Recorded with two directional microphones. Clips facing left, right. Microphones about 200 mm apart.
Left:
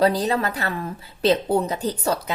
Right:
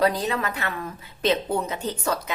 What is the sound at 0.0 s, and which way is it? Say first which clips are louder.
A woman's voice: left 3 dB; 35° left (ahead or behind).